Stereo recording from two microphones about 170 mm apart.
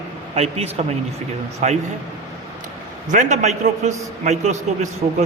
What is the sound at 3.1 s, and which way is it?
A man's voice, 45° right (ahead or behind).